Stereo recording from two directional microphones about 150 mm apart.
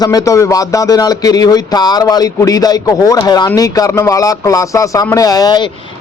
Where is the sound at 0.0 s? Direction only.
25° left (ahead or behind).